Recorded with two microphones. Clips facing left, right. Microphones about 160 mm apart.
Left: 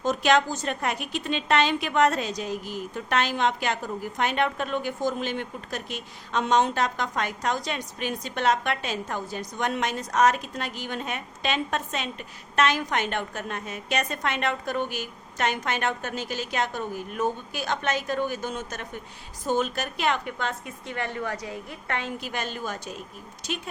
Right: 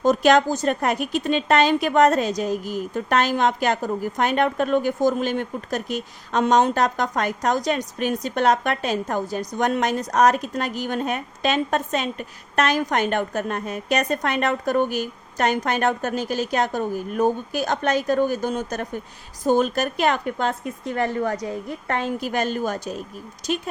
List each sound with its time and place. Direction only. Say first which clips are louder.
0.0 s a woman's voice: right 6 dB; 40° right (ahead or behind)